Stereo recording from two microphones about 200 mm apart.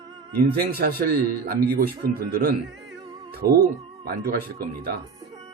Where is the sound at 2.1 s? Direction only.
45° right (ahead or behind).